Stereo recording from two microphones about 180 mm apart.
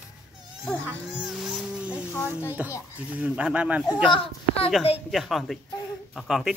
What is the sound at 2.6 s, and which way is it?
Speech, 5° right (ahead or behind).